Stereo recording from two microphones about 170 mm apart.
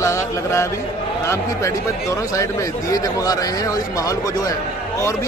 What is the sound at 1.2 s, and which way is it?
Speech, 15° left (ahead or behind).